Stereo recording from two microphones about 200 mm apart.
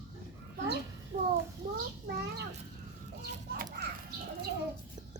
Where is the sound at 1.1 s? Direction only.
45° right (ahead or behind).